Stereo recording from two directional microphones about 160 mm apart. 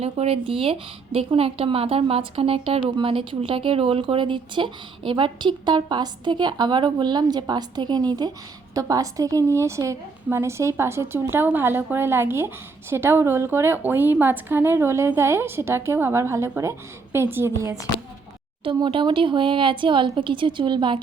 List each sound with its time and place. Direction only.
0.0 s a woman's voice: 40° right (ahead or behind); by 17.7 s 20° right (ahead or behind)
18.6 s a woman's voice: 30° right (ahead or behind)